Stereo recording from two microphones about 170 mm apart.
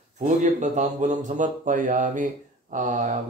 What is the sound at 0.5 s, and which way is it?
A man's voice, 45° right (ahead or behind).